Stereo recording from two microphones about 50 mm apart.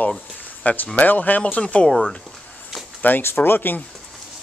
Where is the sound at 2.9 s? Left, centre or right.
Left.